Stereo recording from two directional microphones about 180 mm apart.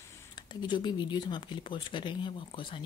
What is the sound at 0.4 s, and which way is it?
Speech, 25° left (ahead or behind).